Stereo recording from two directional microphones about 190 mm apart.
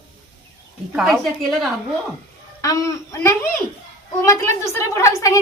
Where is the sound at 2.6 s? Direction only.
15° left (ahead or behind).